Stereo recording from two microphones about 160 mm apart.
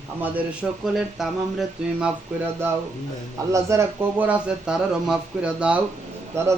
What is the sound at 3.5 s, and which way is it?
Speech, 20° right (ahead or behind).